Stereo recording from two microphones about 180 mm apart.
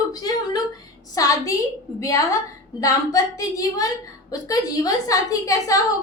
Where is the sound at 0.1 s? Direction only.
20° left (ahead or behind).